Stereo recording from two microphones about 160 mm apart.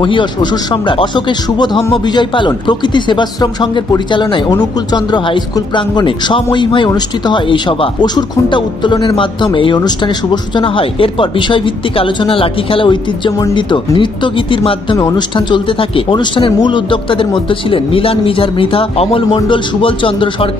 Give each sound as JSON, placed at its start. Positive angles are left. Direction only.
{"t": 0.0, "sound": "speech", "side_deg": 30}